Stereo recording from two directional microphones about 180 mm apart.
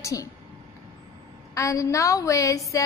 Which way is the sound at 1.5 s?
15° left (ahead or behind).